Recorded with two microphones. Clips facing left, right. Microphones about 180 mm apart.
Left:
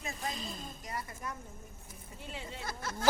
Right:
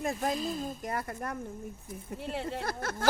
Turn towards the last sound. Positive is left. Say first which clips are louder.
# right 6 dB
turn(degrees=-55)  # may be behind; listen again after turning